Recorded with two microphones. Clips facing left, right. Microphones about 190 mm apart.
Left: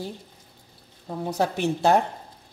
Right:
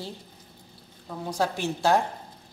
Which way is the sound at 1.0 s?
20° left (ahead or behind).